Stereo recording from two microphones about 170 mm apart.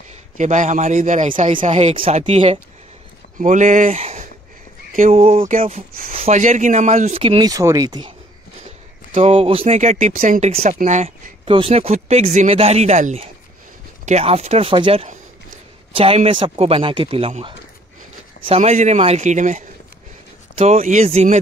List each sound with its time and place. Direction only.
0.4 s a man's voice: 45° right (ahead or behind)
3.3 s a man's voice: 45° right (ahead or behind)
6.1 s speech: 40° right (ahead or behind); by 8.1 s 25° right (ahead or behind)
9.1 s a man's voice: 35° right (ahead or behind)